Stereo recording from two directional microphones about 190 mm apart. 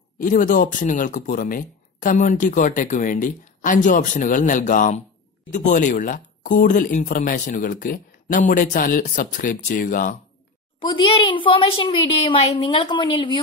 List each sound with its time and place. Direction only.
0.2 s speech: 45° left (ahead or behind)
10.8 s a woman's voice: 25° left (ahead or behind)